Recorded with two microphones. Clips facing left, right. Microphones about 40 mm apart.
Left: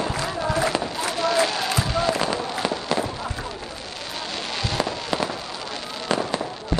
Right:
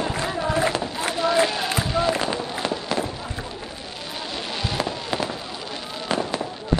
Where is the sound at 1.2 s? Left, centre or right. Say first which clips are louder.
Right 1 dB; right.